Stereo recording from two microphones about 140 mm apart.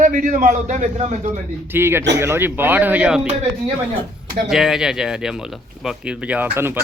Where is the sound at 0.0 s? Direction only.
65° right (ahead or behind).